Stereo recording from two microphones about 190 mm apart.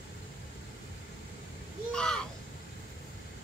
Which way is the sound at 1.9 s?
5° left (ahead or behind).